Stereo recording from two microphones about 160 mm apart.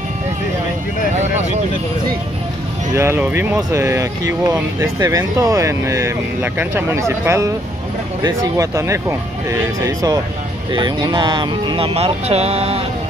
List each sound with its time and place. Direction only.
3.0 s speech: 15° right (ahead or behind); by 12.8 s 40° right (ahead or behind)